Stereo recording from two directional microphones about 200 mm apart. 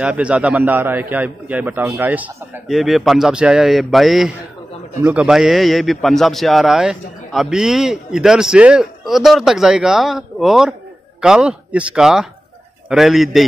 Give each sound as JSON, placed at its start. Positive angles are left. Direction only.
{"t": 0.0, "sound": "a man's voice", "side_deg": -5}